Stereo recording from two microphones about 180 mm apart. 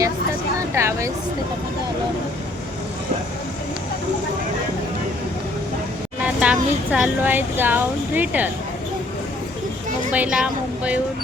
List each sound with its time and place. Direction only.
0.7 s speech: 15° right (ahead or behind)
6.2 s speech: 5° right (ahead or behind)
10.1 s speech: 5° right (ahead or behind)